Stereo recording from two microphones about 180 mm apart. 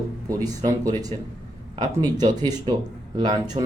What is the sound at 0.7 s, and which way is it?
A man's voice, 20° right (ahead or behind).